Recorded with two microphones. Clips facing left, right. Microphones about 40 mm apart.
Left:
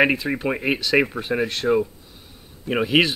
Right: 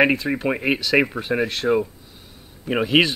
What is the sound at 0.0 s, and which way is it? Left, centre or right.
Speech, centre.